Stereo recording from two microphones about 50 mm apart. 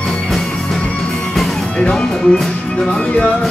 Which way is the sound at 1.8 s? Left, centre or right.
Centre.